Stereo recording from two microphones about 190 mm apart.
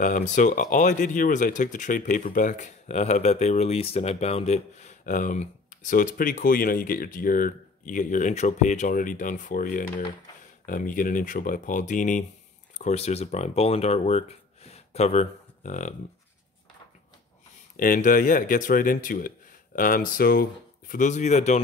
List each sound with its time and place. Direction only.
0.0 s speech: 40° left (ahead or behind)
17.7 s speech: 45° left (ahead or behind)
20.9 s speech: 40° left (ahead or behind)